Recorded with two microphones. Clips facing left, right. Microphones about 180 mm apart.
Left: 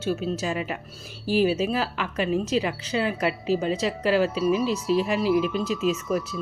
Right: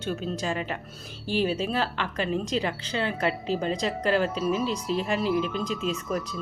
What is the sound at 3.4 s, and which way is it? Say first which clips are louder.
Speech: left 3 dB; 5° left (ahead or behind).